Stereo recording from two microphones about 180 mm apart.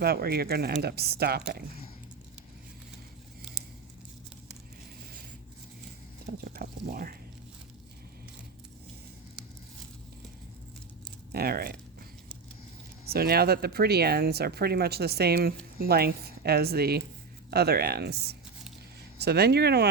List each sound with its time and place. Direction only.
0.0 s speech: 60° right (ahead or behind)
6.5 s speech: 55° right (ahead or behind)
11.3 s speech: 60° right (ahead or behind)
13.1 s speech: 60° right (ahead or behind)